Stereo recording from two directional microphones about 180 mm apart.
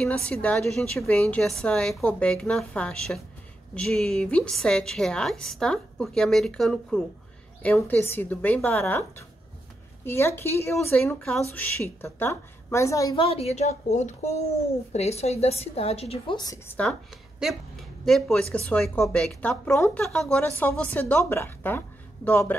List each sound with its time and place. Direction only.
0.0 s a woman's voice: 5° left (ahead or behind)
13.2 s a woman's voice: 35° left (ahead or behind)
16.3 s a woman's voice: 20° left (ahead or behind)
17.4 s speech: centre (ahead or behind)